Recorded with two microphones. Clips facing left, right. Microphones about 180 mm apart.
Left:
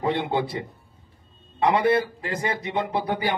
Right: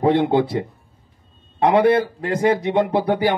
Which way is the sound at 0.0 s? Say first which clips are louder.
Right 8 dB; 60° right (ahead or behind).